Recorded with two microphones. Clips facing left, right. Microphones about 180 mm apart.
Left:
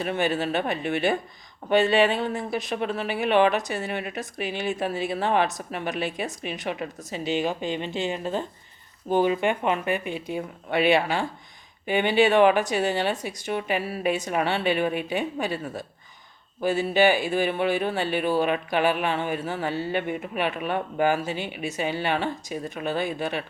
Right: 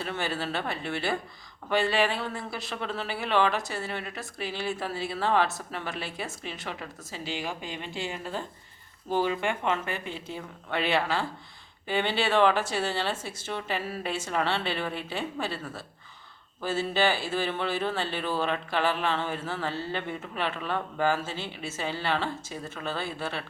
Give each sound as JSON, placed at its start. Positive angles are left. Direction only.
{"t": 0.0, "sound": "speech", "side_deg": 20}